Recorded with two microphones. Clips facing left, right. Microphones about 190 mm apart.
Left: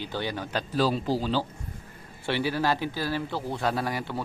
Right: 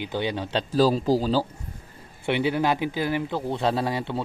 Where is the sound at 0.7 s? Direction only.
40° right (ahead or behind).